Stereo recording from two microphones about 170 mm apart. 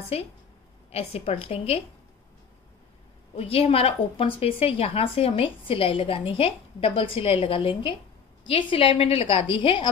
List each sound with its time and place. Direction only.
0.1 s a woman's voice: 35° left (ahead or behind)
3.3 s a woman's voice: 35° left (ahead or behind)